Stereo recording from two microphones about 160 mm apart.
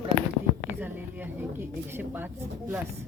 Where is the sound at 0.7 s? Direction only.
10° right (ahead or behind).